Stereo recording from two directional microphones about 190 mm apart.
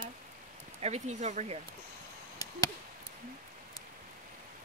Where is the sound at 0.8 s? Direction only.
35° right (ahead or behind).